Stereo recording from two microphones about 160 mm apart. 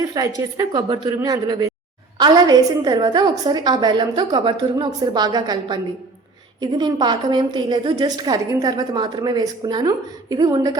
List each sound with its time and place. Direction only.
0.1 s a woman's voice: 20° right (ahead or behind)